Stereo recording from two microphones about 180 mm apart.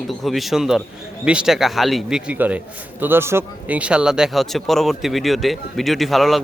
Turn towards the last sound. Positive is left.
turn(degrees=0)  # may be behind; listen again after turning